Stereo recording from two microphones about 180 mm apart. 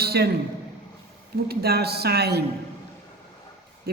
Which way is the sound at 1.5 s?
60° right (ahead or behind).